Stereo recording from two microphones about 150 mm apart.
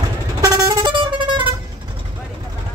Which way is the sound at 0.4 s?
25° right (ahead or behind).